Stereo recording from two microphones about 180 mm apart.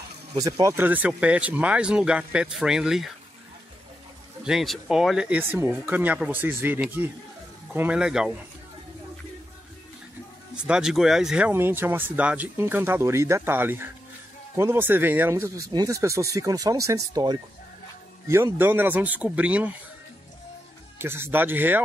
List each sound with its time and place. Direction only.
0.4 s speech: 20° right (ahead or behind); by 3.1 s 5° right (ahead or behind)
4.5 s speech: centre (ahead or behind)
10.5 s speech: 5° right (ahead or behind)
21.0 s speech: 10° right (ahead or behind)